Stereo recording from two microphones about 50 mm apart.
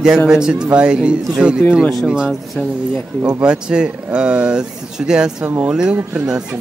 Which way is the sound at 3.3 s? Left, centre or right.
Centre.